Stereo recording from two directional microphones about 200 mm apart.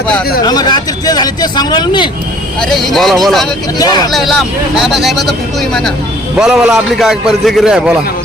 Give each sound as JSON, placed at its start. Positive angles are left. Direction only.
{"t": 0.4, "sound": "speech", "side_deg": 20}
{"t": 2.6, "sound": "a man's voice", "side_deg": 0}
{"t": 3.8, "sound": "speech", "side_deg": 20}
{"t": 4.1, "sound": "a man's voice", "side_deg": 0}
{"t": 6.3, "sound": "a man's voice", "side_deg": -5}